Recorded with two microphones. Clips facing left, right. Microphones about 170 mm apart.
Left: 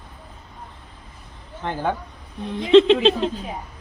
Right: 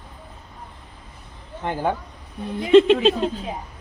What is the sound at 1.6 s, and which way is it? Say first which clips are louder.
Speech: right 1 dB; 15° right (ahead or behind).